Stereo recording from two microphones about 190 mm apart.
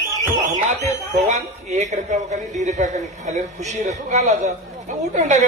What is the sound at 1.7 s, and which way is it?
A man's voice, 40° right (ahead or behind).